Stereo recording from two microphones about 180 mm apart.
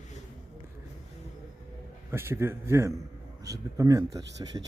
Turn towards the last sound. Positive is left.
turn(degrees=-20)  # may be behind; listen again after turning